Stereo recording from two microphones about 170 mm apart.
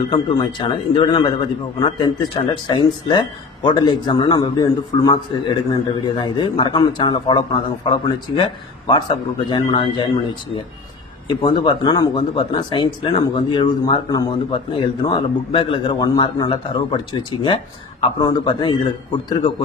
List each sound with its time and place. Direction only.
0.1 s speech: 30° left (ahead or behind)